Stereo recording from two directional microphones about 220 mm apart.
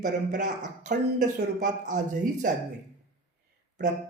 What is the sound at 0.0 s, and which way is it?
Speech, 35° right (ahead or behind).